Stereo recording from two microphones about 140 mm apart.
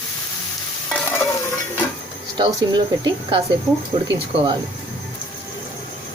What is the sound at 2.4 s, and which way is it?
Speech, 35° right (ahead or behind).